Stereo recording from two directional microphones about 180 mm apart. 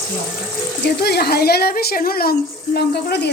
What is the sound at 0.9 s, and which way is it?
Speech, 65° left (ahead or behind).